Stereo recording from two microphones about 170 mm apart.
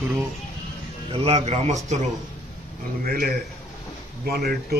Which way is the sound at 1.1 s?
40° right (ahead or behind).